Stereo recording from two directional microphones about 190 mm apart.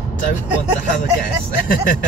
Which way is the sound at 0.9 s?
45° left (ahead or behind).